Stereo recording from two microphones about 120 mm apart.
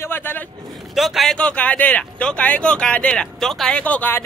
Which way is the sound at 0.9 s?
Centre (ahead or behind).